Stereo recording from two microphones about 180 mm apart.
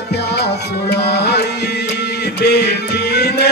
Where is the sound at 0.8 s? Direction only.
65° left (ahead or behind).